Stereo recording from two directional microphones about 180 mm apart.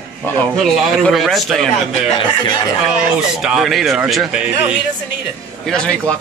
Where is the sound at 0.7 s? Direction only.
Centre (ahead or behind).